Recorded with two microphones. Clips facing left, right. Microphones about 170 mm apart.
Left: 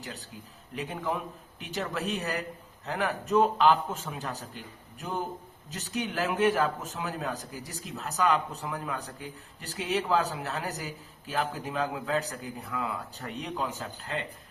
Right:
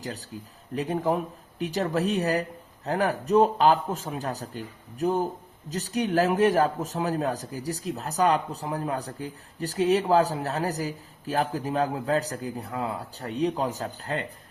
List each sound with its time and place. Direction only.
0.0 s speech: 40° right (ahead or behind)